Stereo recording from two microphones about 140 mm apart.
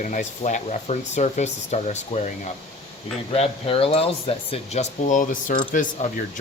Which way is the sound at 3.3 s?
45° left (ahead or behind).